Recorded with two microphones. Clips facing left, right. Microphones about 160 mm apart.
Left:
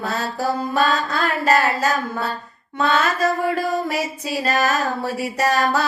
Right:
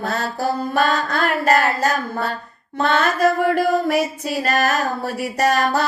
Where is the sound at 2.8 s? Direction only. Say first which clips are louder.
Right 2 dB; 55° right (ahead or behind).